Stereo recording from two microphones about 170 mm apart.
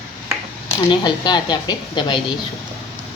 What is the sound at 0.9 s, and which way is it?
A woman's voice, 25° left (ahead or behind).